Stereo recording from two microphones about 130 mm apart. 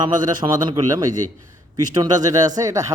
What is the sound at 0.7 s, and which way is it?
Speech, 30° right (ahead or behind).